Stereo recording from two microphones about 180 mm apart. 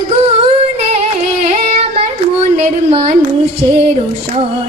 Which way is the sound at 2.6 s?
35° right (ahead or behind).